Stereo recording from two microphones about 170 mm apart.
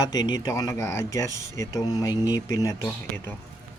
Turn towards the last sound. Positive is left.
turn(degrees=10)  # may be behind; listen again after turning